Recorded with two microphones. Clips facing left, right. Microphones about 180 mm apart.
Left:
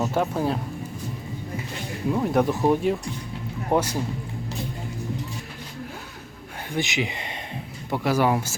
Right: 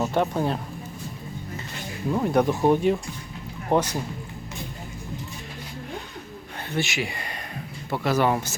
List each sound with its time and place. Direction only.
0.0 s speech: 5° left (ahead or behind)
2.1 s speech: centre (ahead or behind)
6.7 s speech: 15° left (ahead or behind)